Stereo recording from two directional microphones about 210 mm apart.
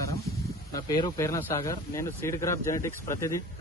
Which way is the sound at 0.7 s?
15° left (ahead or behind).